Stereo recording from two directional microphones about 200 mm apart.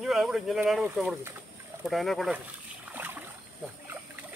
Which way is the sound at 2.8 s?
10° right (ahead or behind).